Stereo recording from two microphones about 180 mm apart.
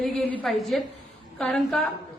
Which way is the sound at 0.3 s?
Centre (ahead or behind).